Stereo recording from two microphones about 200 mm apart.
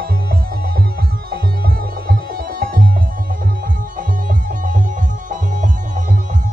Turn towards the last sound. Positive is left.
turn(degrees=-40)  # may be behind; listen again after turning